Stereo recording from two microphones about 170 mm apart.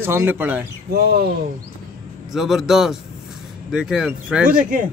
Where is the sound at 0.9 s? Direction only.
70° right (ahead or behind).